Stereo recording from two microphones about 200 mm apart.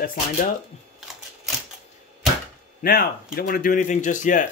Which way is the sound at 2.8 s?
50° left (ahead or behind).